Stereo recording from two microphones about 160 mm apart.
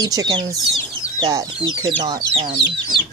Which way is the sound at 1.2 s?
30° right (ahead or behind).